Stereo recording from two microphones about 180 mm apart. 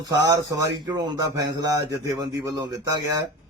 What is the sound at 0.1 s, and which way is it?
A man's voice, 20° right (ahead or behind).